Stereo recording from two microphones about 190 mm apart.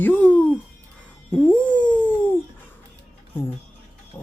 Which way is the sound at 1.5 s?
5° left (ahead or behind).